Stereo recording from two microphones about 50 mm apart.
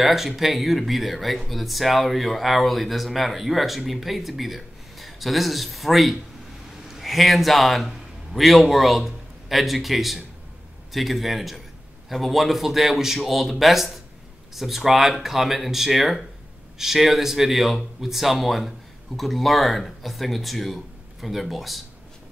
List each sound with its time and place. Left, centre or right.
0.0 s a man's voice: centre